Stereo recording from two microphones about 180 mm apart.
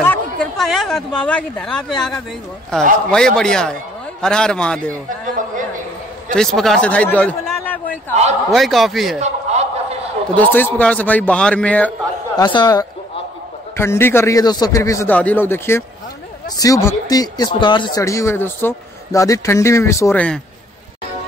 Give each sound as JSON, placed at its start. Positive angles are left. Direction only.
{"t": 0.0, "sound": "a man's voice", "side_deg": 5}
{"t": 6.3, "sound": "a man's voice", "side_deg": 0}
{"t": 8.1, "sound": "a man's voice", "side_deg": -40}
{"t": 8.5, "sound": "a man's voice", "side_deg": 0}
{"t": 9.2, "sound": "chuckle", "side_deg": -35}
{"t": 10.3, "sound": "speech", "side_deg": 10}
{"t": 12.4, "sound": "speech", "side_deg": 25}